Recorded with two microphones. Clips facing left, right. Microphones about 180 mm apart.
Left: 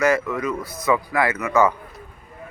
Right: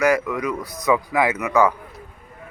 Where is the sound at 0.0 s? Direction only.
15° right (ahead or behind).